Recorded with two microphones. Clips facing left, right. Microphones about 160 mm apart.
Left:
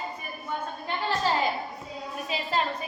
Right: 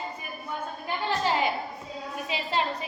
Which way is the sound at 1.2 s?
15° right (ahead or behind).